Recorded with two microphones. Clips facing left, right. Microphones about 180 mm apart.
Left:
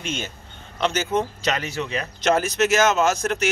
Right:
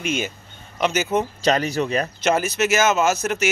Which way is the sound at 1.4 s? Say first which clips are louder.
Right 6 dB; 35° right (ahead or behind).